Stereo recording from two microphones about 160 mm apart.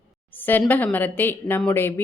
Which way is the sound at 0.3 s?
10° left (ahead or behind).